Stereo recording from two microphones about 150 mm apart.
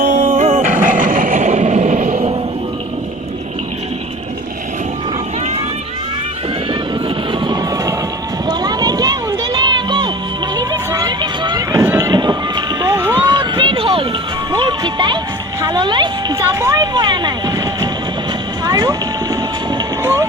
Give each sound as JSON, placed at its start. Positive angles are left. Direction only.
{"t": 0.0, "sound": "vehicle", "side_deg": -60}
{"t": 7.3, "sound": "vehicle", "side_deg": -25}
{"t": 8.4, "sound": "music", "side_deg": -25}
{"t": 10.6, "sound": "a sound", "side_deg": -25}
{"t": 11.7, "sound": "run", "side_deg": -15}
{"t": 12.1, "sound": "vehicle", "side_deg": -30}
{"t": 13.2, "sound": "run", "side_deg": -30}
{"t": 14.5, "sound": "music", "side_deg": -30}
{"t": 15.6, "sound": "a sound", "side_deg": -30}
{"t": 18.6, "sound": "vehicle", "side_deg": -25}